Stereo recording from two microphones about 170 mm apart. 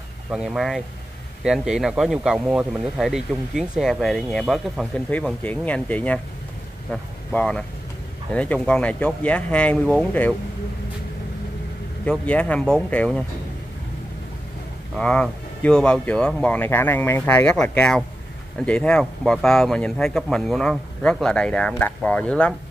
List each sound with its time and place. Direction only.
0.3 s speech: 5° right (ahead or behind)
12.0 s speech: 5° left (ahead or behind)
15.0 s speech: 5° left (ahead or behind)